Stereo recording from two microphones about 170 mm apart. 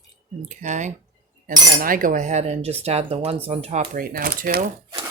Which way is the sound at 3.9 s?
55° right (ahead or behind).